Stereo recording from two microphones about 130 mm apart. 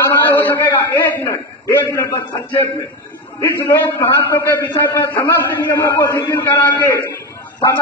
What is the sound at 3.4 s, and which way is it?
A man's voice, 20° left (ahead or behind).